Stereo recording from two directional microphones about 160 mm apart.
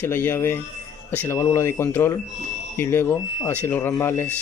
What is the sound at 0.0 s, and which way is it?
Speech, 15° left (ahead or behind).